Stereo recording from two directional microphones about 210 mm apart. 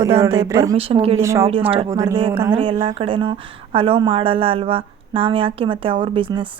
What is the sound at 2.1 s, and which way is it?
Speech, 25° right (ahead or behind).